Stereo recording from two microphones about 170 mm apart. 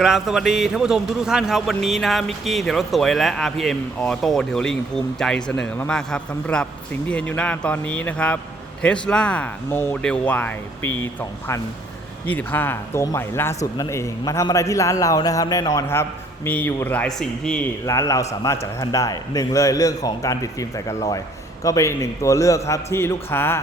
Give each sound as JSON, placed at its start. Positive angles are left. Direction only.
{"t": 0.0, "sound": "a man's voice", "side_deg": 0}
{"t": 17.8, "sound": "a man's voice", "side_deg": 20}